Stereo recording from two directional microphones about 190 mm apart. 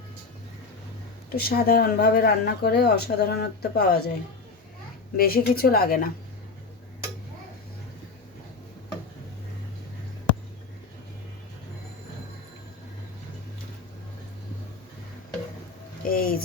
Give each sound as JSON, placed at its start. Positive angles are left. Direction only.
{"t": 1.3, "sound": "speech", "side_deg": 50}
{"t": 5.1, "sound": "a woman's voice", "side_deg": 50}
{"t": 16.0, "sound": "speech", "side_deg": 50}